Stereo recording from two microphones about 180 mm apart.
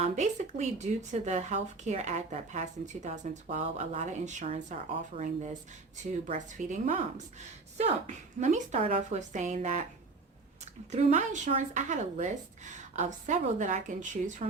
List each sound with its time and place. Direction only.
0.0 s speech: 40° right (ahead or behind)
10.9 s speech: 40° right (ahead or behind)